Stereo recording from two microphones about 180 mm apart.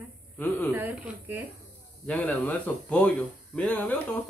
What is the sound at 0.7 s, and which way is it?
Speech, 10° right (ahead or behind).